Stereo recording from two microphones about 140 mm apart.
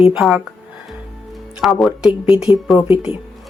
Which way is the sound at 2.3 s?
45° left (ahead or behind).